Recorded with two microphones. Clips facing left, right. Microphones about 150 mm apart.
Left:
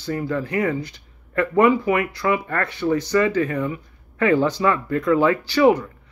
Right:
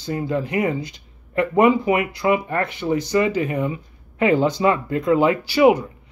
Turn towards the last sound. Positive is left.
turn(degrees=-15)  # may be behind; listen again after turning